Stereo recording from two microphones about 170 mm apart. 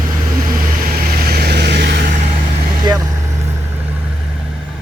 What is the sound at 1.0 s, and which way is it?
Vehicle, 65° right (ahead or behind).